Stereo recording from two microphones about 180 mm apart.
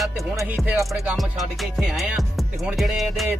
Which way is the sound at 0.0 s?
Centre (ahead or behind).